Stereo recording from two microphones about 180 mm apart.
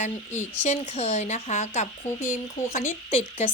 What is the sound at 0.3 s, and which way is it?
Speech, 10° left (ahead or behind).